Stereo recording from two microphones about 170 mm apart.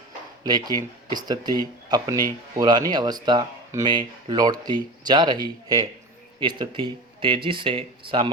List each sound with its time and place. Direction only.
0.4 s speech: 25° right (ahead or behind)